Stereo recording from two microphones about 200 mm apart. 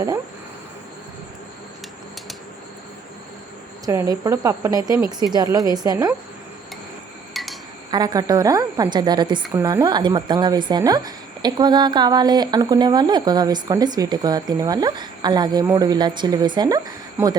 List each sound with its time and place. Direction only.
3.8 s a woman's voice: 20° right (ahead or behind)
7.3 s dishes: centre (ahead or behind)
7.9 s a woman's voice: 20° right (ahead or behind)